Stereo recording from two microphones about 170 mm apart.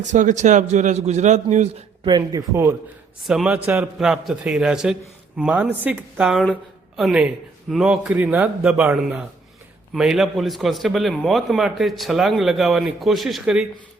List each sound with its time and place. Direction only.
0.0 s a man's voice: 45° right (ahead or behind)
2.0 s speech: 25° right (ahead or behind)
3.2 s a man's voice: 5° right (ahead or behind)